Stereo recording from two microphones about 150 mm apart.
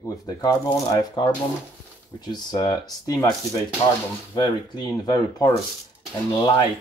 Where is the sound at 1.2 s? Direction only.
35° left (ahead or behind).